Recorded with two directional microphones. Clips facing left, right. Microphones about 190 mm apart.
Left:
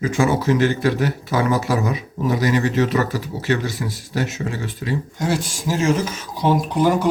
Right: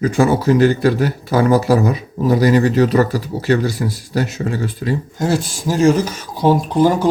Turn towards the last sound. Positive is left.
turn(degrees=-30)  # may be behind; listen again after turning